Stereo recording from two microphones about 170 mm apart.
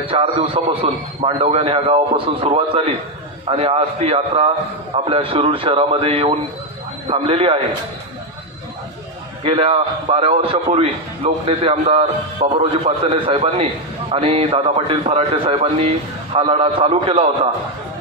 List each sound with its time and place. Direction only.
0.0 s a man's voice: 35° right (ahead or behind)
9.4 s a man's voice: 35° right (ahead or behind)